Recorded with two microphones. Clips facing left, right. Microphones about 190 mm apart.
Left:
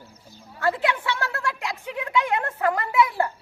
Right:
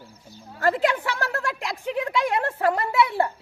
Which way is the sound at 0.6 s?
40° right (ahead or behind).